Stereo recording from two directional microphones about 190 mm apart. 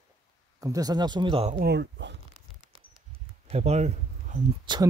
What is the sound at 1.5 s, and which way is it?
Speech, 55° right (ahead or behind).